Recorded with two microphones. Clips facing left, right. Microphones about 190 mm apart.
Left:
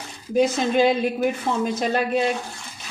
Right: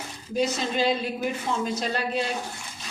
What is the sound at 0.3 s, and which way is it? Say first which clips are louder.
A woman's voice: left 6 dB; 55° left (ahead or behind).